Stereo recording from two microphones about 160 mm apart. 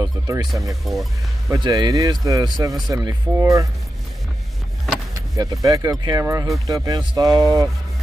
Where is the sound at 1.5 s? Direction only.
20° right (ahead or behind).